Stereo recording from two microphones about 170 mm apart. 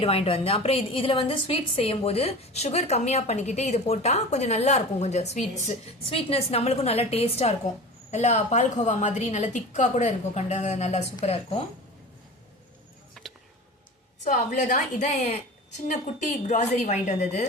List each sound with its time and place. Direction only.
0.0 s a woman's voice: 35° left (ahead or behind)
13.2 s a sound: centre (ahead or behind)
14.3 s a woman's voice: 45° left (ahead or behind)